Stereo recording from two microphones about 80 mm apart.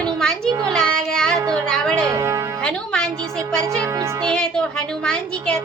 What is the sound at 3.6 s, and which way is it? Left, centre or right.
Speech, right.